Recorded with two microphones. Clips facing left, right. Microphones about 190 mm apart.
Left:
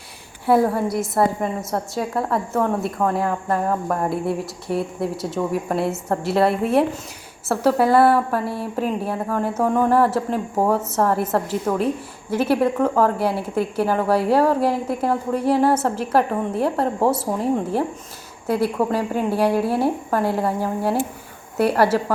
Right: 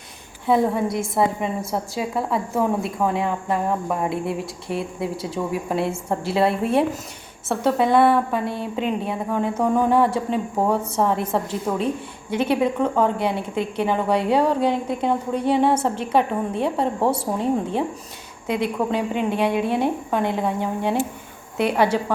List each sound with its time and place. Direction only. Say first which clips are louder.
0.4 s a woman's voice: left 2 dB; 5° left (ahead or behind)